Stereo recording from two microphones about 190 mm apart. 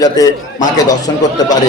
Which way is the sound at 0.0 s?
20° left (ahead or behind).